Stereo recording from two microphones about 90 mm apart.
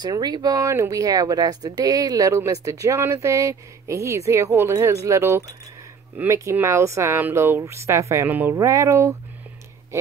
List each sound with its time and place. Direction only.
0.0 s speech: 50° right (ahead or behind); by 8.3 s 35° right (ahead or behind)
8.3 s speech: 20° right (ahead or behind)
8.5 s speech: 35° right (ahead or behind)